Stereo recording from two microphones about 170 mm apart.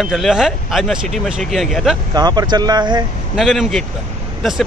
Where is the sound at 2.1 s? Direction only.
25° right (ahead or behind).